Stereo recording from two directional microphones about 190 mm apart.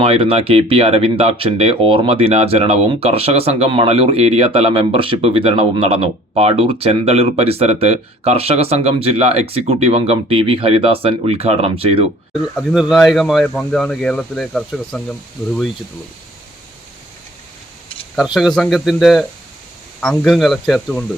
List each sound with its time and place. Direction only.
0.0 s speech: 30° right (ahead or behind)
12.3 s speech: 5° right (ahead or behind)
18.2 s speech: centre (ahead or behind)